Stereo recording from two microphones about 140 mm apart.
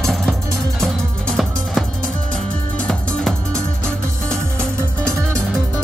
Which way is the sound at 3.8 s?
5° left (ahead or behind).